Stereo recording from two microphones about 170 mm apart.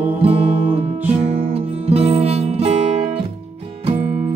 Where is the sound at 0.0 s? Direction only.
35° right (ahead or behind).